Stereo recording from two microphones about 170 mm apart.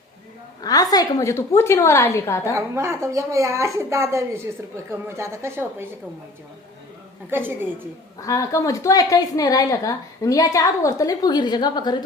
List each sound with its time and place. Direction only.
0.6 s a woman's voice: 20° left (ahead or behind)
2.6 s a woman's voice: 15° right (ahead or behind)
7.3 s a woman's voice: 10° right (ahead or behind)
8.2 s a woman's voice: 20° left (ahead or behind)